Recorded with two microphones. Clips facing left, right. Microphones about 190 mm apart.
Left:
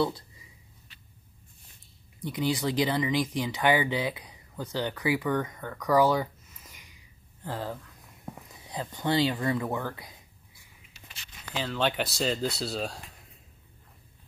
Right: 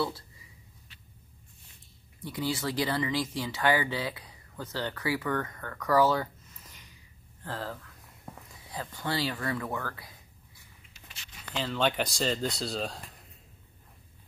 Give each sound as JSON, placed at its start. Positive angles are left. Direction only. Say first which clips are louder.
{"t": 2.2, "sound": "speech", "louder": "left 3 dB", "side_deg": 15}
{"t": 8.3, "sound": "a sound", "louder": "left 4 dB", "side_deg": 5}
{"t": 8.6, "sound": "speech", "louder": "left 5 dB", "side_deg": 20}
{"t": 11.5, "sound": "speech", "louder": "even", "side_deg": 0}